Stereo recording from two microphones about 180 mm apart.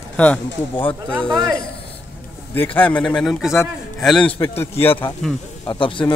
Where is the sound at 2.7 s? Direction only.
10° left (ahead or behind).